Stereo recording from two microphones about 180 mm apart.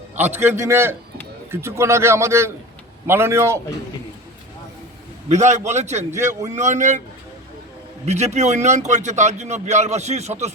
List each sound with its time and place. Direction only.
0.2 s a man's voice: 10° right (ahead or behind)
5.3 s a man's voice: 40° right (ahead or behind)
8.0 s a man's voice: 40° right (ahead or behind)